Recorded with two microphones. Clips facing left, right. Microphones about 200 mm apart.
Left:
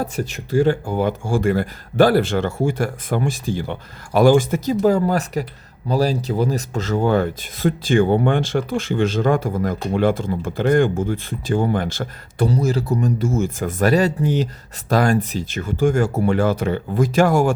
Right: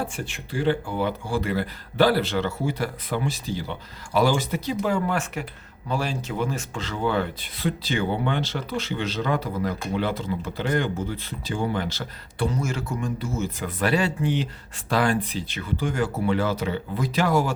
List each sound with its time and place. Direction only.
0.0 s speech: 40° left (ahead or behind)
12.5 s speech: 35° left (ahead or behind)